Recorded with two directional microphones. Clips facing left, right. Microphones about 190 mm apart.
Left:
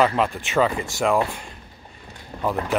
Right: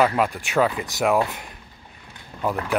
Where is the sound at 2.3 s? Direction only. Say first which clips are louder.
Even; 35° left (ahead or behind).